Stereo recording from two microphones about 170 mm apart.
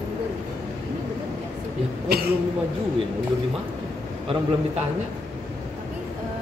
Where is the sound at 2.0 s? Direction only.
70° right (ahead or behind).